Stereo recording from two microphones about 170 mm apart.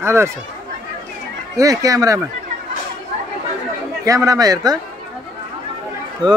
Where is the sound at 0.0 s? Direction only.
15° right (ahead or behind).